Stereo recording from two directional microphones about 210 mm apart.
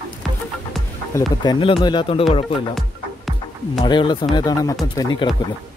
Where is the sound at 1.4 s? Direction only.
20° left (ahead or behind).